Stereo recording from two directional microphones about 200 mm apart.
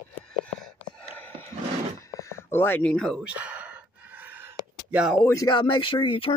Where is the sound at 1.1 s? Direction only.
10° left (ahead or behind).